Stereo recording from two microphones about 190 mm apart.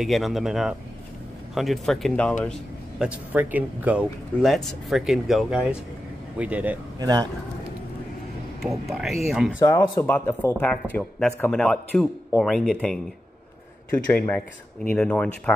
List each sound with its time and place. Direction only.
0.0 s a man's voice: centre (ahead or behind)
3.0 s a man's voice: 5° right (ahead or behind)
7.0 s a man's voice: 20° right (ahead or behind)
8.6 s a man's voice: centre (ahead or behind)
9.6 s a man's voice: 15° left (ahead or behind)